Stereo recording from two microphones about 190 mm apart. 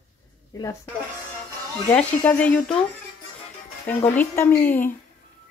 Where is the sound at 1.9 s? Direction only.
10° left (ahead or behind).